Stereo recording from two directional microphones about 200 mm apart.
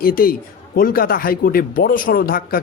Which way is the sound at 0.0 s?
45° left (ahead or behind).